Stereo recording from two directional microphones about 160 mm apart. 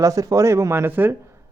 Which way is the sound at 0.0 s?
20° right (ahead or behind).